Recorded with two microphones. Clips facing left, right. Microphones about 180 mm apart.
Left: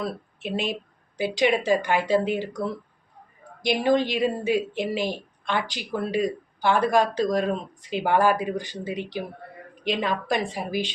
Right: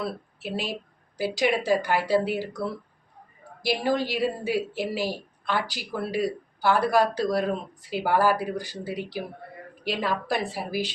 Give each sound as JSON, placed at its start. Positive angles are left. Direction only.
{"t": 0.5, "sound": "speech", "side_deg": 20}
{"t": 1.1, "sound": "a woman's voice", "side_deg": -5}
{"t": 3.6, "sound": "a woman's voice", "side_deg": -5}
{"t": 8.4, "sound": "speech", "side_deg": 20}
{"t": 8.6, "sound": "a woman's voice", "side_deg": -5}